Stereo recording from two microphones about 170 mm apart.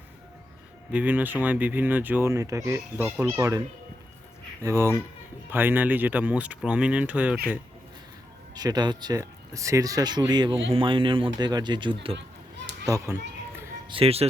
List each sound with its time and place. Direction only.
0.9 s speech: 10° right (ahead or behind)
4.6 s speech: 15° right (ahead or behind)
8.5 s a child's voice: 25° right (ahead or behind)
13.8 s speech: 35° right (ahead or behind)